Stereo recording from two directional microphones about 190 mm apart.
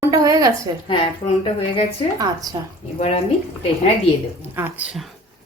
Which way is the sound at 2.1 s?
20° right (ahead or behind).